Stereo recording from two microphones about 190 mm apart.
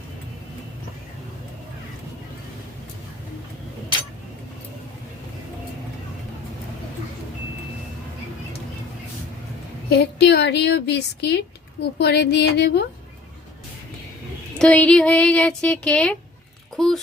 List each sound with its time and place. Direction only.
9.9 s speech: 60° left (ahead or behind)
14.6 s a child's voice: 5° left (ahead or behind)